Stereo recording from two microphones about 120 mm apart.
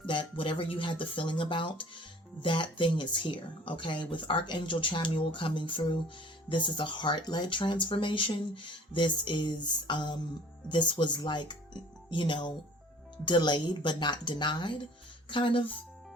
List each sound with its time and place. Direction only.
0.1 s speech: 45° left (ahead or behind)